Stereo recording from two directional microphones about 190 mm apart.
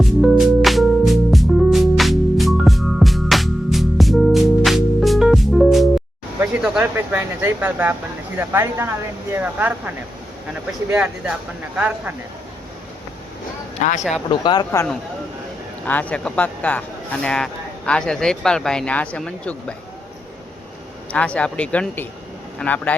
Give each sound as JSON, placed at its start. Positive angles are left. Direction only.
{"t": 0.0, "sound": "music", "side_deg": 0}
{"t": 6.4, "sound": "speech", "side_deg": -5}
{"t": 13.7, "sound": "speech", "side_deg": 40}
{"t": 14.3, "sound": "speech", "side_deg": 25}
{"t": 15.9, "sound": "speech", "side_deg": 10}
{"t": 21.1, "sound": "speech", "side_deg": 5}